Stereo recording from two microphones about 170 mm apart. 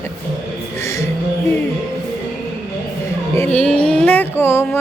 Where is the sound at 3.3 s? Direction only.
10° left (ahead or behind).